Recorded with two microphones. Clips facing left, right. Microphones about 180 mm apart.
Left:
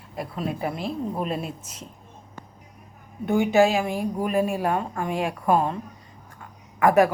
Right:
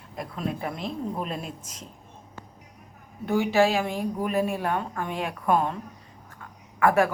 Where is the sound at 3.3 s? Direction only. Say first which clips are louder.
Left 3 dB; 15° left (ahead or behind).